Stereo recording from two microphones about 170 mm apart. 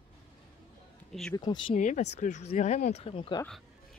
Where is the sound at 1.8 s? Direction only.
45° left (ahead or behind); by 3.4 s 30° left (ahead or behind).